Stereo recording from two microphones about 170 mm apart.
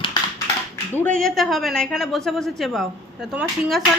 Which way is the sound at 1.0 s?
5° left (ahead or behind).